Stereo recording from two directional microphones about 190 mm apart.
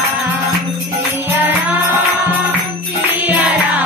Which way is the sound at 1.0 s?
10° right (ahead or behind).